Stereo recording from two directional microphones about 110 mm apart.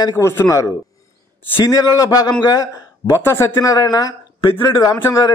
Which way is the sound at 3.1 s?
25° left (ahead or behind).